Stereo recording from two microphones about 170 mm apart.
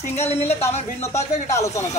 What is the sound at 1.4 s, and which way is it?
Speech, 15° left (ahead or behind).